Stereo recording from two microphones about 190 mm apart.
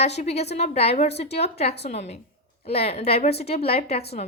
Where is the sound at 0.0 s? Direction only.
35° left (ahead or behind).